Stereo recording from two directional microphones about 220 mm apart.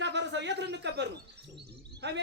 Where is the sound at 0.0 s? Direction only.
55° right (ahead or behind).